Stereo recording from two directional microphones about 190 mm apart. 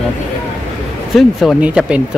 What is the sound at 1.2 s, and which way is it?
Speech, centre (ahead or behind).